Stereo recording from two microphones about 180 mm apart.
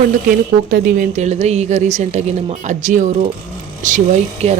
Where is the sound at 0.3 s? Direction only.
50° right (ahead or behind).